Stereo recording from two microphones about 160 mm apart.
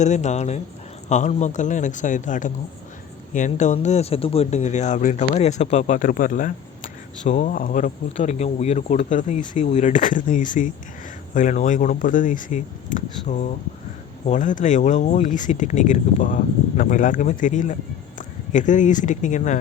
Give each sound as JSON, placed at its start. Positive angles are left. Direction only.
{"t": 0.0, "sound": "speech", "side_deg": 45}
{"t": 8.1, "sound": "speech", "side_deg": 45}